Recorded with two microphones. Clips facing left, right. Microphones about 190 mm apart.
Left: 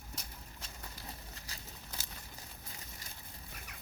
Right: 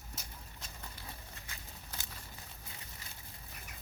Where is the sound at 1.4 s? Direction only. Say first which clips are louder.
Left 1 dB; 40° left (ahead or behind).